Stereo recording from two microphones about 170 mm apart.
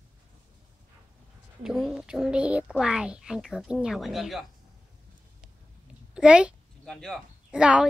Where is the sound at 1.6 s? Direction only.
Centre (ahead or behind).